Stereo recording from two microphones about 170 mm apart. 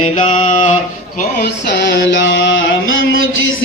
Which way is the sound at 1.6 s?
85° left.